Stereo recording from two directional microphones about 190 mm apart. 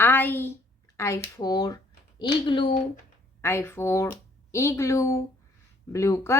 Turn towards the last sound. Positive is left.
turn(degrees=15)  # may be behind; listen again after turning